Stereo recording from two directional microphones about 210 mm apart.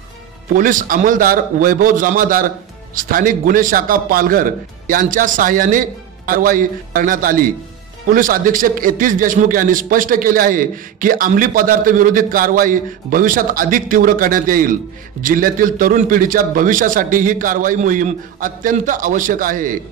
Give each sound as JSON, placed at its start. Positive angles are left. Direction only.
{"t": 0.6, "sound": "a man's voice", "side_deg": -40}